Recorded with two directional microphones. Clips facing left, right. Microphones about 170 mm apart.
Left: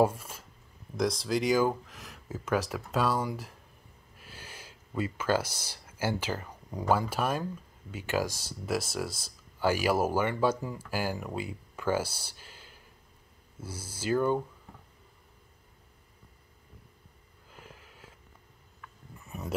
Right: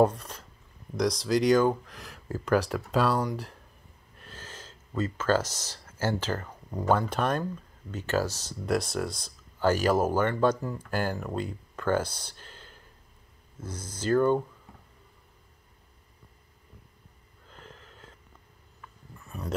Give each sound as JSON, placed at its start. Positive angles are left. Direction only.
{"t": 0.0, "sound": "a sound", "side_deg": 5}
{"t": 0.9, "sound": "speech", "side_deg": 0}
{"t": 17.5, "sound": "wheeze", "side_deg": 10}
{"t": 19.2, "sound": "dog", "side_deg": 20}